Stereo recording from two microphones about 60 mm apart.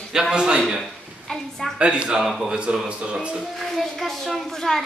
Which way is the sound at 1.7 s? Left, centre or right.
Centre.